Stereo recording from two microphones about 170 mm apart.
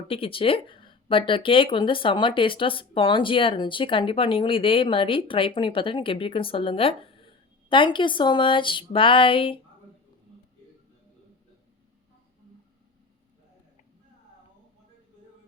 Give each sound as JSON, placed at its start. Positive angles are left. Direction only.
{"t": 0.1, "sound": "speech", "side_deg": 30}